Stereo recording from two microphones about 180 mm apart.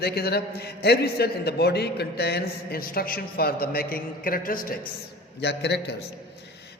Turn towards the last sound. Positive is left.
turn(degrees=70)  # may be behind; listen again after turning